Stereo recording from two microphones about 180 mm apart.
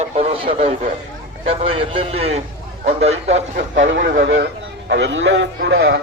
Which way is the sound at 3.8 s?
90° right.